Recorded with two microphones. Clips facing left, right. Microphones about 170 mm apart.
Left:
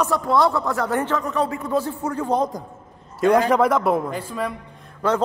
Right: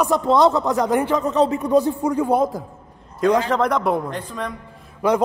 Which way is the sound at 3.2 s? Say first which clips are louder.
Left 1 dB; 10° left (ahead or behind).